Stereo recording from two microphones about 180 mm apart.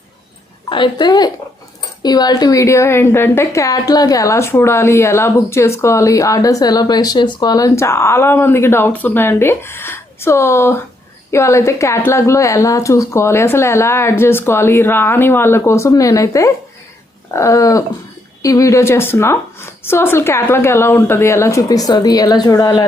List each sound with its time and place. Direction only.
0.7 s a woman's voice: 25° left (ahead or behind)